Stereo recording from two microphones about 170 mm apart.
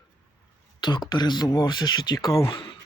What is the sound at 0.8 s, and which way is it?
Speech, 25° left (ahead or behind).